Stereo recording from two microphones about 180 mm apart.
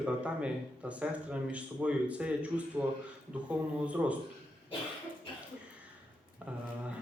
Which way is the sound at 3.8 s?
5° right (ahead or behind).